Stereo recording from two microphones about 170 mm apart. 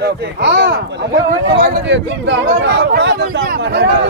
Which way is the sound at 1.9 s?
90° right.